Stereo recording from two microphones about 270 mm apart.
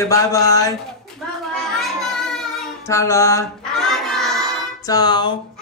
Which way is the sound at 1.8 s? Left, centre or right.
Centre.